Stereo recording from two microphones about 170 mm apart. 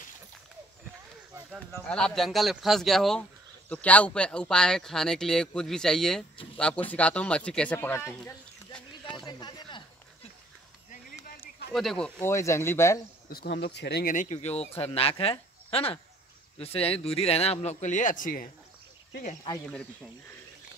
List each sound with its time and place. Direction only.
1.9 s speech: 5° left (ahead or behind)
9.1 s a sound: 25° left (ahead or behind)
11.7 s speech: centre (ahead or behind)
12.2 s speech: 15° left (ahead or behind)
13.3 s speech: 75° left (ahead or behind)
14.1 s speech: 45° left (ahead or behind)